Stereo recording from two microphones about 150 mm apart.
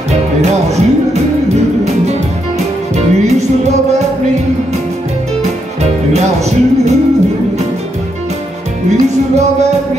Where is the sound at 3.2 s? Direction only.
50° right (ahead or behind).